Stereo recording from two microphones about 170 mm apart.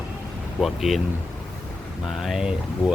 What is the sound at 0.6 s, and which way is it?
Speech, centre (ahead or behind).